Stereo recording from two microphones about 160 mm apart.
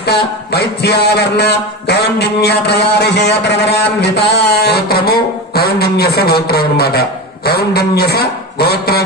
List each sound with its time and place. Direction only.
0.0 s a man's voice: 90° left